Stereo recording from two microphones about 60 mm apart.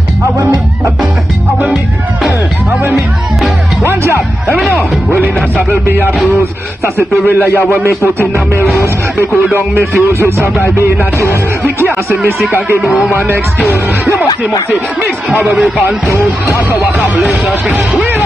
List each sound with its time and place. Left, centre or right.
3.9 s music: right
4.6 s music: centre
5.7 s music: right
7.8 s music: right
9.8 s music: right
11.6 s music: right
12.8 s speech: centre
17.0 s speech: centre